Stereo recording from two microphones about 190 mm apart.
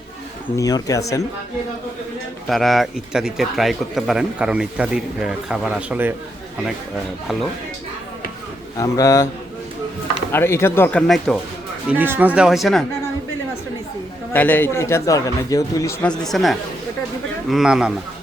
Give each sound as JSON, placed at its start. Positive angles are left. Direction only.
{"t": 0.5, "sound": "a man's voice", "side_deg": 15}
{"t": 2.5, "sound": "a man's voice", "side_deg": 0}
{"t": 8.8, "sound": "a man's voice", "side_deg": 20}
{"t": 10.3, "sound": "a man's voice", "side_deg": 15}
{"t": 11.9, "sound": "speech", "side_deg": -10}
{"t": 14.3, "sound": "a man's voice", "side_deg": 10}
{"t": 16.0, "sound": "a man's voice", "side_deg": 0}